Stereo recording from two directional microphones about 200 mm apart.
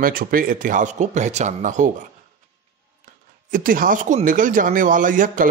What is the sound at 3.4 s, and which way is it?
Speech, 45° right (ahead or behind).